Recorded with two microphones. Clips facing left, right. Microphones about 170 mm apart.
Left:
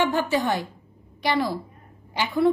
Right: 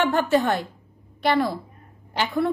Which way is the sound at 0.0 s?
55° right (ahead or behind).